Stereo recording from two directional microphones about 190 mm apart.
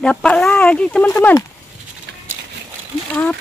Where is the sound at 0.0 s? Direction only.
5° left (ahead or behind).